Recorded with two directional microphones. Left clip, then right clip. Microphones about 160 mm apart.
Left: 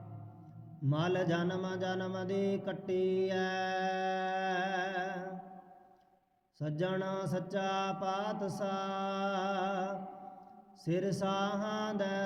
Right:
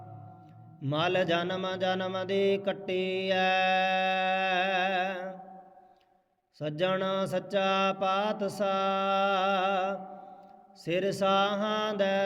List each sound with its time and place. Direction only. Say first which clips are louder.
0.9 s music: right 6 dB; 25° right (ahead or behind)
3.0 s mantra: even; 55° right (ahead or behind)
3.3 s mantra: right 9 dB; 25° right (ahead or behind)
6.8 s music: right 8 dB; 25° right (ahead or behind)
10.9 s mantra: right 6 dB; 55° right (ahead or behind)
11.2 s music: right 8 dB; 25° right (ahead or behind)